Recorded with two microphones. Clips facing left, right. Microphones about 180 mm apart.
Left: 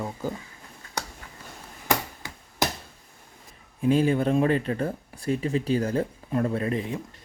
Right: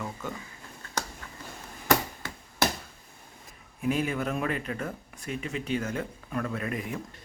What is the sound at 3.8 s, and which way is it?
Speech, 30° left (ahead or behind).